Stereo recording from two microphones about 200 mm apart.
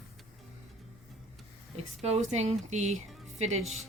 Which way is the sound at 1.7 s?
30° right (ahead or behind).